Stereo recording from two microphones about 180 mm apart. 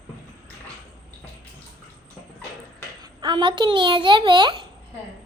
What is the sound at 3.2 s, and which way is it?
A child's voice, 25° right (ahead or behind).